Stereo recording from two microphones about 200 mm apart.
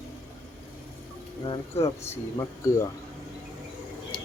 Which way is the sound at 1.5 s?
30° left (ahead or behind).